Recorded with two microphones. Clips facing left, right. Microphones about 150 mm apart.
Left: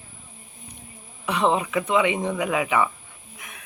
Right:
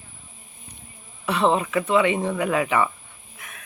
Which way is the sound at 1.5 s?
15° left (ahead or behind).